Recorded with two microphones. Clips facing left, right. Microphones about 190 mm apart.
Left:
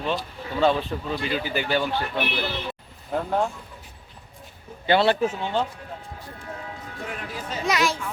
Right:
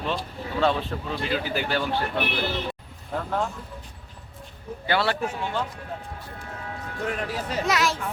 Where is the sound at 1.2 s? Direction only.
Centre (ahead or behind).